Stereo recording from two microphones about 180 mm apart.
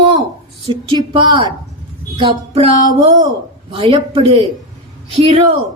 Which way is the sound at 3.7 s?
30° right (ahead or behind).